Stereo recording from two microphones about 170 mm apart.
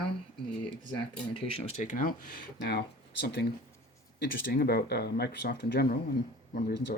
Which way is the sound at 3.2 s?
75° left (ahead or behind).